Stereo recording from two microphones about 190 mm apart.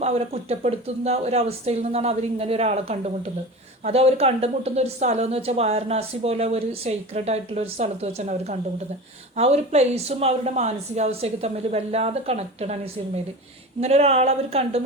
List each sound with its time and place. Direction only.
0.0 s a woman's voice: 35° right (ahead or behind)